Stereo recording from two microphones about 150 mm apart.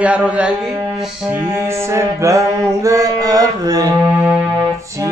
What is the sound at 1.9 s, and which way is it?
Mantra, 20° right (ahead or behind).